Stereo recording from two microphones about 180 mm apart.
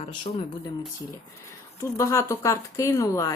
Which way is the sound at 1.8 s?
15° left (ahead or behind).